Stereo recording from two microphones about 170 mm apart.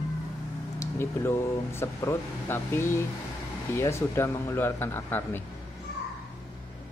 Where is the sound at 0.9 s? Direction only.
15° left (ahead or behind).